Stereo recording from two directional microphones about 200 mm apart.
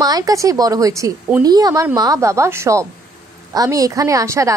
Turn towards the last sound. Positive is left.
turn(degrees=-15)  # may be behind; listen again after turning